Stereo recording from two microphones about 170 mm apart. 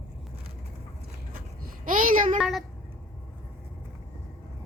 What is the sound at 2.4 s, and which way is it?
Speech, centre (ahead or behind).